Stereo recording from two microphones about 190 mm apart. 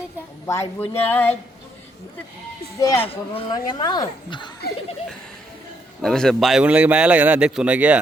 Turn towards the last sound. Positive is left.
turn(degrees=-5)  # may be behind; listen again after turning